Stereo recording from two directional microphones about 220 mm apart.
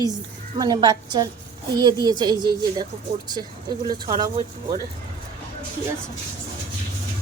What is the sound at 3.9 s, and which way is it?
Speech, 20° right (ahead or behind).